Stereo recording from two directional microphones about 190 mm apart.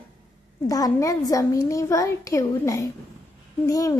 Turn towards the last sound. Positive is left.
turn(degrees=15)  # may be behind; listen again after turning